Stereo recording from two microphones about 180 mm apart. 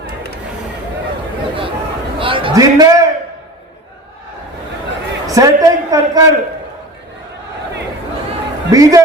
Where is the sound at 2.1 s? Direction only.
30° right (ahead or behind).